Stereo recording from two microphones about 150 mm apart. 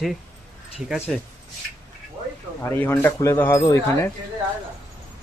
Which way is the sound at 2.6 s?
15° left (ahead or behind).